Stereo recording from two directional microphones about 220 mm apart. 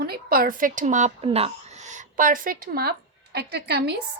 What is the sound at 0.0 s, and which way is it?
A woman's voice, 45° right (ahead or behind).